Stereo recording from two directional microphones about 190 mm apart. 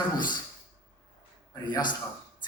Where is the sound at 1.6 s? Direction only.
20° left (ahead or behind).